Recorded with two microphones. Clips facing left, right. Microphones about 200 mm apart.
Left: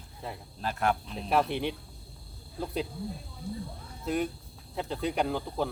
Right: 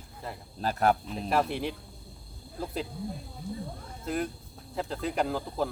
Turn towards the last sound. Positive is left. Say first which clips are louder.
# even
turn(degrees=0)  # may be behind; listen again after turning